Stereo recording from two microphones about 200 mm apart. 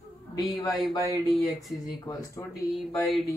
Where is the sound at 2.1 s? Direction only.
15° left (ahead or behind).